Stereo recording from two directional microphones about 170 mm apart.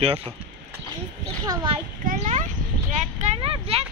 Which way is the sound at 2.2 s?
45° right (ahead or behind).